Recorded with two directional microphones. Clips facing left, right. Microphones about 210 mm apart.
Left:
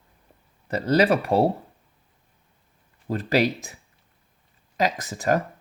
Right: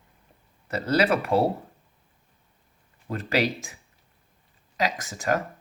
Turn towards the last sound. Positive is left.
turn(degrees=35)  # may be behind; listen again after turning